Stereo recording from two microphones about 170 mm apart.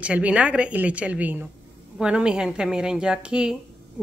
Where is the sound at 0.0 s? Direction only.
5° right (ahead or behind).